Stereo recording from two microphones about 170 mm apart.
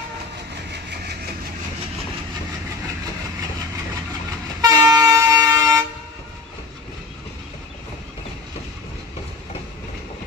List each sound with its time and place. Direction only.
4.6 s vehicle: 20° right (ahead or behind)